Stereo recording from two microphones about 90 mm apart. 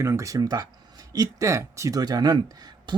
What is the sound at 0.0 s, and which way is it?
A man's voice, 35° right (ahead or behind).